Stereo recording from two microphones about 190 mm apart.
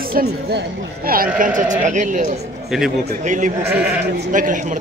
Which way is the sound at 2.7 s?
Centre (ahead or behind).